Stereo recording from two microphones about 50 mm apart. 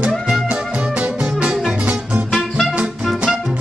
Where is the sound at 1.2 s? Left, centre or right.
Centre.